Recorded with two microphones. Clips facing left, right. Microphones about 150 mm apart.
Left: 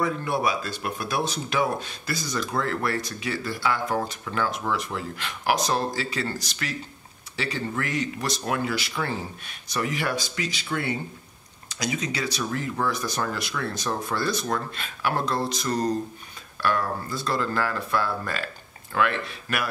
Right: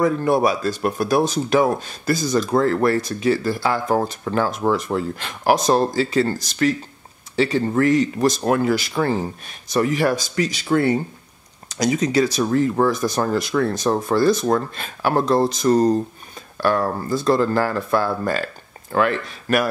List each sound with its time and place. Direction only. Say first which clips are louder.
0.0 s speech: right 8 dB; 40° right (ahead or behind)